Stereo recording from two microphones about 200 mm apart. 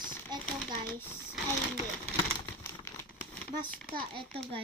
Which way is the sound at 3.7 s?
5° left (ahead or behind).